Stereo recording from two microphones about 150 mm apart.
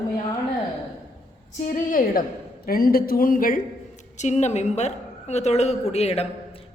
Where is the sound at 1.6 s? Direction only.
60° left (ahead or behind).